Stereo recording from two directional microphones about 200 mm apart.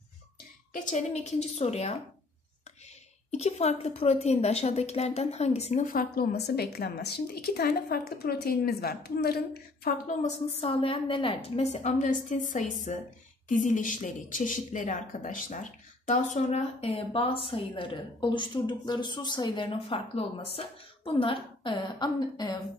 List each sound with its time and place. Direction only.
0.7 s a woman's voice: 35° left (ahead or behind)
3.3 s a woman's voice: 30° left (ahead or behind)